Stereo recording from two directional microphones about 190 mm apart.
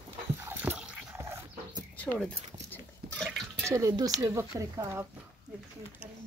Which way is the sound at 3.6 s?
15° right (ahead or behind).